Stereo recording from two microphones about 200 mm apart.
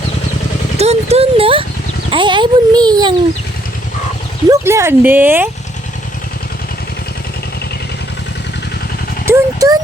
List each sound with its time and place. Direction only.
0.8 s a sound: 30° right (ahead or behind)
2.0 s a child's voice: 25° right (ahead or behind)
4.4 s speech: 15° right (ahead or behind)
9.3 s vehicle: 15° right (ahead or behind)